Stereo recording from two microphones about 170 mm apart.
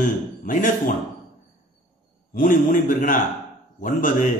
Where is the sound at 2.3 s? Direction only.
50° left (ahead or behind).